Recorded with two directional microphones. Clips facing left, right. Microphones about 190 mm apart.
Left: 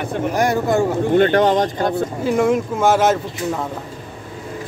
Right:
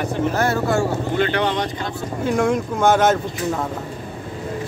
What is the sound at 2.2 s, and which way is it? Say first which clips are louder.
Speech: left 1 dB; 5° left (ahead or behind).